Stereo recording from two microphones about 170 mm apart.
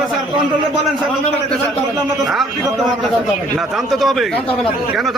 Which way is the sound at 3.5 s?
Centre (ahead or behind).